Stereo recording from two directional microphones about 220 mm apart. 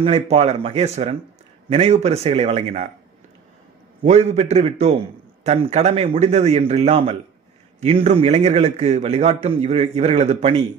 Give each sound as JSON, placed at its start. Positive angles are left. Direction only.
{"t": 0.0, "sound": "a man's voice", "side_deg": -25}
{"t": 4.0, "sound": "a man's voice", "side_deg": -30}